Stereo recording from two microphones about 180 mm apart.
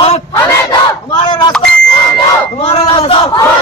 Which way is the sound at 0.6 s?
25° left (ahead or behind).